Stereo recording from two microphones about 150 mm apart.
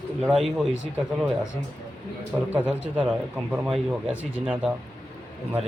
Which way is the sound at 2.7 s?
5° right (ahead or behind).